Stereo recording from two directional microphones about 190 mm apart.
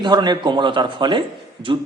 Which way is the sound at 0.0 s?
25° right (ahead or behind).